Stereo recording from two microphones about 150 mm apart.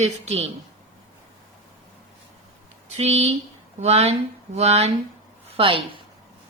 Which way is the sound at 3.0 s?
45° right (ahead or behind).